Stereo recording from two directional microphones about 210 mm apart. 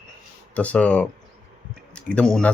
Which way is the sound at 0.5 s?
5° left (ahead or behind).